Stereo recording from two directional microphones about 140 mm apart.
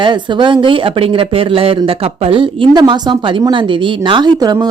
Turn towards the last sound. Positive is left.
turn(degrees=-25)  # may be behind; listen again after turning